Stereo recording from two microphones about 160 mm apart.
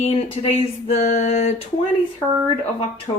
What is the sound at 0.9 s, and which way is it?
Speech, 40° left (ahead or behind).